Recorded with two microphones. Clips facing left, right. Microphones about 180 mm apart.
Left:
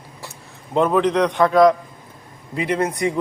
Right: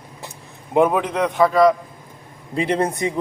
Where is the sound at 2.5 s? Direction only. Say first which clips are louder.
Right 1 dB; 30° right (ahead or behind).